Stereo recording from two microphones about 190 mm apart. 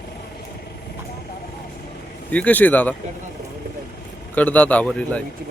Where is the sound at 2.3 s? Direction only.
10° left (ahead or behind).